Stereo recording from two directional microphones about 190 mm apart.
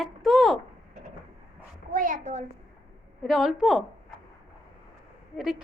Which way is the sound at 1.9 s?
45° right (ahead or behind).